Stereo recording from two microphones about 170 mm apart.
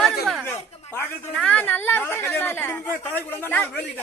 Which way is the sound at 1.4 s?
10° left (ahead or behind).